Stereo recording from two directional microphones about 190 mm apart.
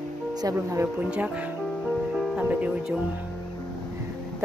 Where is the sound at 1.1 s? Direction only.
5° right (ahead or behind).